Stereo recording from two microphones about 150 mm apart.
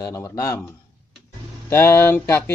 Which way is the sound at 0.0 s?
20° left (ahead or behind).